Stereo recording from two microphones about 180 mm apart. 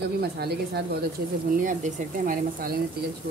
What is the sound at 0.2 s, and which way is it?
Speech, 65° right (ahead or behind).